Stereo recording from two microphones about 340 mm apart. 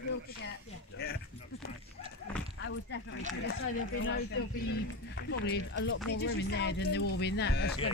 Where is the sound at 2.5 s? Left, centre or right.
Left.